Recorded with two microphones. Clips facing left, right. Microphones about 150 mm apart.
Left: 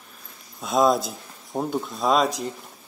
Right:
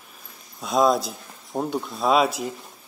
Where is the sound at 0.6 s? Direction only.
Centre (ahead or behind).